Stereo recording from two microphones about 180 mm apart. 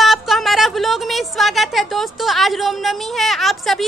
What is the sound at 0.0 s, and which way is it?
A woman's voice, centre (ahead or behind).